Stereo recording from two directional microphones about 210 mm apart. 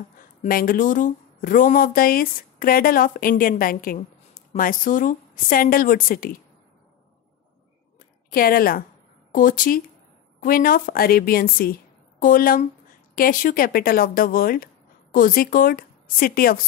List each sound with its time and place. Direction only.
0.4 s speech: 40° left (ahead or behind)
8.3 s a woman's voice: 45° left (ahead or behind)